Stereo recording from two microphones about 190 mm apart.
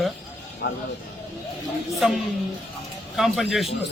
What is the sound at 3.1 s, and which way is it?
Speech, centre (ahead or behind).